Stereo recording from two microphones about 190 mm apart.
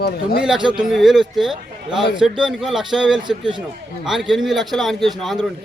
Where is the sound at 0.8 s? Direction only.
Centre (ahead or behind).